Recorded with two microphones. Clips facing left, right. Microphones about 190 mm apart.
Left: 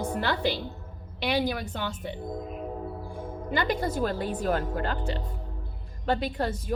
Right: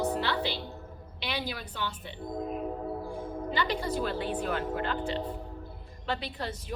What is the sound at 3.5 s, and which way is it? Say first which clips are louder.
Speech: left 4 dB; 50° left (ahead or behind).